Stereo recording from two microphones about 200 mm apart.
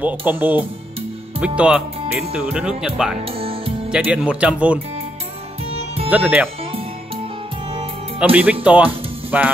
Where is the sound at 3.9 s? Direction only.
5° right (ahead or behind).